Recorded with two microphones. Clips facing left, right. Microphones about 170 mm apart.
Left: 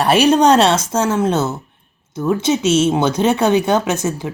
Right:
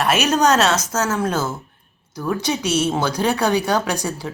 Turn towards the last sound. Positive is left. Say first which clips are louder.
# left 4 dB
turn(degrees=20)  # may be behind; listen again after turning